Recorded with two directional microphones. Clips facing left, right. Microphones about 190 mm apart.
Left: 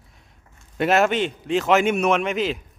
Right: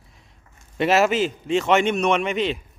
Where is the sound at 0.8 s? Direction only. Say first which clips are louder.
Even; centre (ahead or behind).